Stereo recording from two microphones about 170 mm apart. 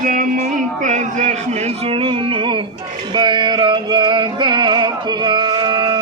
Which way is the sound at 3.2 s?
25° right (ahead or behind).